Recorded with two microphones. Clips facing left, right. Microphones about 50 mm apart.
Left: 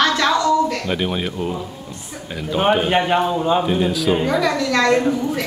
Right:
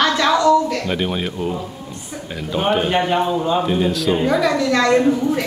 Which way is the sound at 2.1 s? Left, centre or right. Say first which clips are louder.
Left 1 dB; centre.